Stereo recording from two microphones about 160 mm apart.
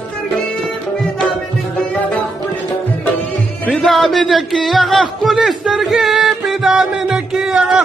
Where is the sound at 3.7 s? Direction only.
Centre (ahead or behind).